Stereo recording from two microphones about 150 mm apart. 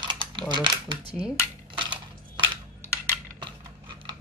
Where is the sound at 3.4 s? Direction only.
35° right (ahead or behind).